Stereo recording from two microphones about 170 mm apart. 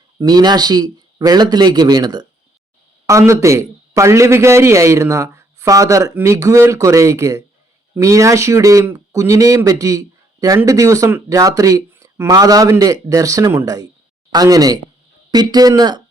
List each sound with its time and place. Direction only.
0.2 s a man's voice: 25° right (ahead or behind)